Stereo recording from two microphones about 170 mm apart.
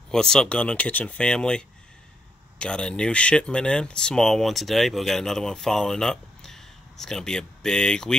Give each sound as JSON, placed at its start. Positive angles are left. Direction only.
{"t": 0.1, "sound": "speech", "side_deg": 5}